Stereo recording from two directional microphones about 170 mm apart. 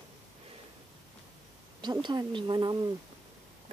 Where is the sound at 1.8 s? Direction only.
25° right (ahead or behind).